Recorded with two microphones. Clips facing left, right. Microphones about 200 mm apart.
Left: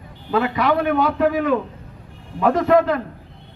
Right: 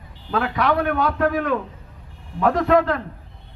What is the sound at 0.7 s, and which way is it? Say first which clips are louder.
Speech: left 3 dB; 20° left (ahead or behind).